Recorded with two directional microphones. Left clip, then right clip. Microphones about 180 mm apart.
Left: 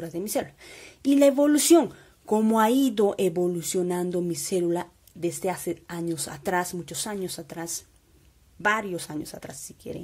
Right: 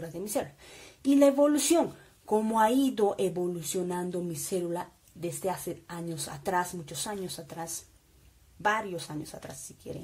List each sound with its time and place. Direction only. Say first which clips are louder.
0.0 s speech: left 4 dB; 40° left (ahead or behind)